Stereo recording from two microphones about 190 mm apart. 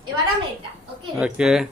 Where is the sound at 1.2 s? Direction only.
5° right (ahead or behind).